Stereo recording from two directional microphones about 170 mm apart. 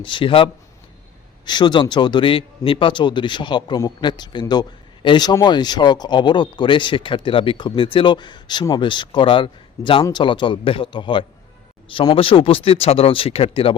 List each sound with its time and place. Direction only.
0.0 s speech: 30° left (ahead or behind)